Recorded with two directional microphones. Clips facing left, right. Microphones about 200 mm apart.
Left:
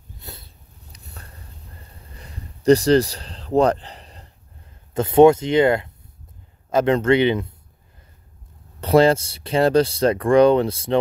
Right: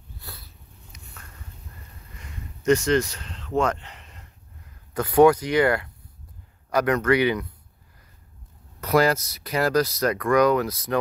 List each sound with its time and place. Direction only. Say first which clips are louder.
0.2 s sniff: left 4 dB; 25° left (ahead or behind)
0.9 s a sound: left 3 dB; 35° left (ahead or behind)
6.7 s speech: left 4 dB; 25° left (ahead or behind)
8.8 s speech: left 5 dB; 30° left (ahead or behind)